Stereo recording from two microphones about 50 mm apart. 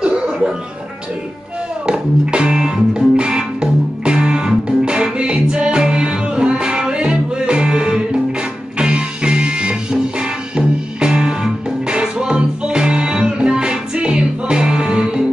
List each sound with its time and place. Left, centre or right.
1.9 s music: centre